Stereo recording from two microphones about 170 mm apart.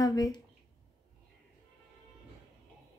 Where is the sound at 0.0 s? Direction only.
20° left (ahead or behind).